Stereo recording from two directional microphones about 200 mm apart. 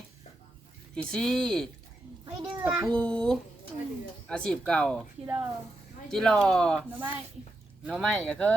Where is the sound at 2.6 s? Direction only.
5° right (ahead or behind).